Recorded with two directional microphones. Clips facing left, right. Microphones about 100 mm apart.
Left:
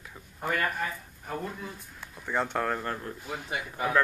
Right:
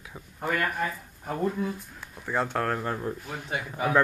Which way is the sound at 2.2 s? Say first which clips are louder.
Right 1 dB; 5° right (ahead or behind).